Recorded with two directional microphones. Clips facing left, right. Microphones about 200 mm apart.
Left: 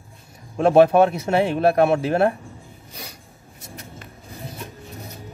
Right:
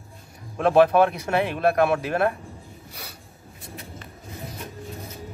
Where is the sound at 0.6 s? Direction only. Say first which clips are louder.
Left 3 dB; 30° left (ahead or behind).